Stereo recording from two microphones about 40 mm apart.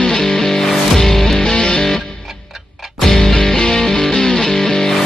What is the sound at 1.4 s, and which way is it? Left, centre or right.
Music, centre.